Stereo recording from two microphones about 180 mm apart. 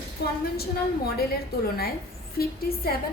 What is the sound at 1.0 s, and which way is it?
A woman's voice, 60° left (ahead or behind).